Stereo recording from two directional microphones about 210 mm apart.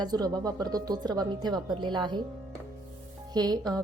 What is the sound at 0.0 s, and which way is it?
A woman's voice, 20° right (ahead or behind).